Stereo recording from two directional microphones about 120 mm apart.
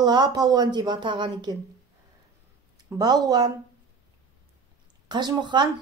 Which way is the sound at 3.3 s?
35° right (ahead or behind).